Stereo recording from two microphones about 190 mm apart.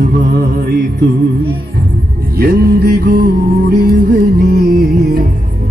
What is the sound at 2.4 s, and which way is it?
Music, 55° right (ahead or behind).